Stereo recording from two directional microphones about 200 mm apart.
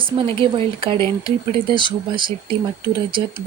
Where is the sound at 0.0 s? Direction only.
25° right (ahead or behind).